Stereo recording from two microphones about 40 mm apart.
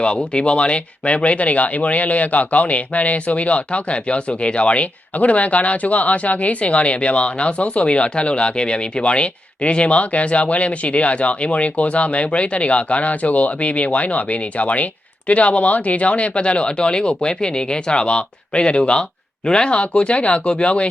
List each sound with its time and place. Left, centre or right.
0.3 s speech: left